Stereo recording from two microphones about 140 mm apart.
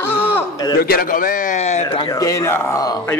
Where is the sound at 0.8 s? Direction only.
90° left; by 2.0 s 50° left (ahead or behind).